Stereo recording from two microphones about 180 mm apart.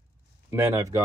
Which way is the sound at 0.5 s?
15° right (ahead or behind).